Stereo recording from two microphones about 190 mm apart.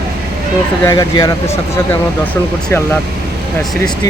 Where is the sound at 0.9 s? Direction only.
20° left (ahead or behind).